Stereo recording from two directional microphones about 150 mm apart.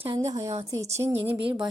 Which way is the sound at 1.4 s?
35° right (ahead or behind).